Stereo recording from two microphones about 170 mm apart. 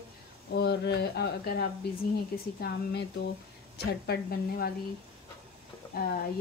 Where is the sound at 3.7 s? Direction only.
70° left (ahead or behind).